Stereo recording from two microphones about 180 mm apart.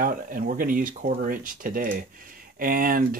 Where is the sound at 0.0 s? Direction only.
50° right (ahead or behind).